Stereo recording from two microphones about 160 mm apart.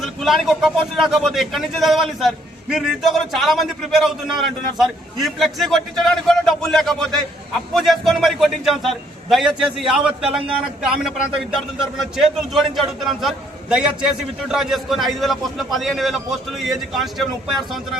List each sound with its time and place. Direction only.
0.0 s a man's voice: centre (ahead or behind)